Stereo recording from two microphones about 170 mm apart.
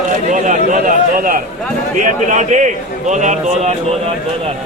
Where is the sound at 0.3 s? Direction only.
50° right (ahead or behind).